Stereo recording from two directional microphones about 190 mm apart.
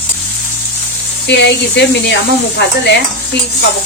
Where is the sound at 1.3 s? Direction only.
65° left (ahead or behind).